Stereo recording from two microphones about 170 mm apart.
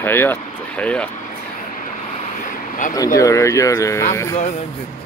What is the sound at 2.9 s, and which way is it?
Speech, 20° left (ahead or behind).